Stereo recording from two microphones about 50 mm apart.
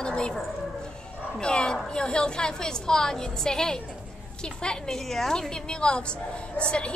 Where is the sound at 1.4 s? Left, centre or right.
Centre.